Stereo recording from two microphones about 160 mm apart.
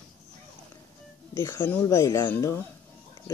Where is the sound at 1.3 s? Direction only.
15° left (ahead or behind).